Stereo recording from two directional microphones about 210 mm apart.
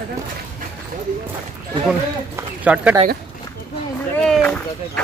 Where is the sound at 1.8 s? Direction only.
5° right (ahead or behind).